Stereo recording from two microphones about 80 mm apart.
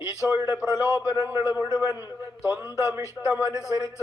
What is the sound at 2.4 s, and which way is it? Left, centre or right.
Speech, left.